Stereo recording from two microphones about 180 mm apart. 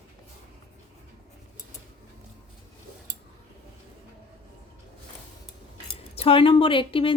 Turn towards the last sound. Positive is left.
turn(degrees=30)  # may be behind; listen again after turning